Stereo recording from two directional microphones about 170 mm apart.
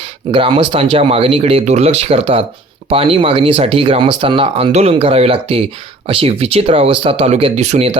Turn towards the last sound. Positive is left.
turn(degrees=-40)  # may be behind; listen again after turning